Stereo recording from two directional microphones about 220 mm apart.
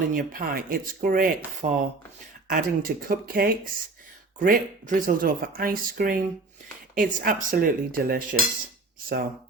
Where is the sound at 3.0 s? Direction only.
40° right (ahead or behind).